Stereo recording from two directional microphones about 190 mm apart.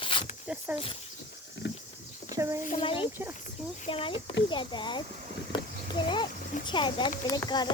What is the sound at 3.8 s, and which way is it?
Speech, 30° left (ahead or behind).